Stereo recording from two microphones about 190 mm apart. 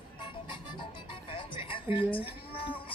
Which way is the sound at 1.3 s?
25° left (ahead or behind).